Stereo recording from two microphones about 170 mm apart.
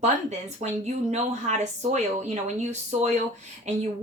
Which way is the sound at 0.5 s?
40° right (ahead or behind).